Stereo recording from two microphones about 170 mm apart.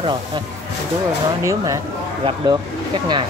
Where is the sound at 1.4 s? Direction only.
20° right (ahead or behind).